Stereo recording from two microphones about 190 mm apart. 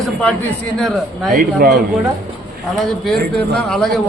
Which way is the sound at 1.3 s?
55° right (ahead or behind).